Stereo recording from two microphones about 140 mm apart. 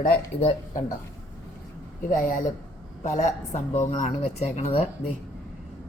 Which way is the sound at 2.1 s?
75° left (ahead or behind).